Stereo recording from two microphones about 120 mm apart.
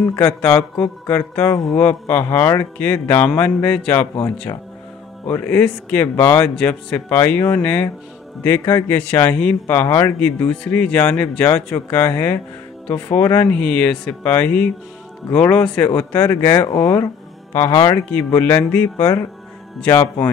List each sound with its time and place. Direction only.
0.1 s a man's voice: 10° left (ahead or behind)
13.2 s speech: 25° left (ahead or behind)
13.5 s a man's voice: 10° left (ahead or behind)
16.5 s speech: 35° left (ahead or behind)
18.1 s a man's voice: 15° left (ahead or behind)